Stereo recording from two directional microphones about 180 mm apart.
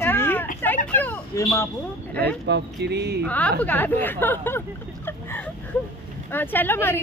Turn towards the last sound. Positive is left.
turn(degrees=10)  # may be behind; listen again after turning